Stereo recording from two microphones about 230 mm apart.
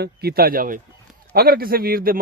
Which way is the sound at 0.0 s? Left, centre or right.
Right.